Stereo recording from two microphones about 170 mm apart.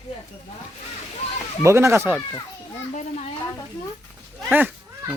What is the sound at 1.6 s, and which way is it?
Speech, 15° right (ahead or behind).